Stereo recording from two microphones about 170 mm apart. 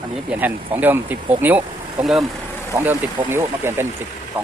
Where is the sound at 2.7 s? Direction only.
15° right (ahead or behind).